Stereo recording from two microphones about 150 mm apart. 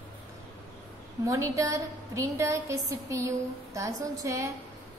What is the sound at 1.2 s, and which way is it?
A woman's voice, 20° right (ahead or behind).